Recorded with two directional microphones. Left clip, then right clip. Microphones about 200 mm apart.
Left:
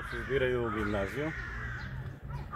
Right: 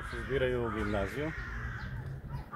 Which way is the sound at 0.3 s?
40° left (ahead or behind).